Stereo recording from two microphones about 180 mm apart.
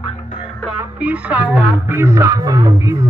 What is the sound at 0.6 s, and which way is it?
Speech, 10° right (ahead or behind).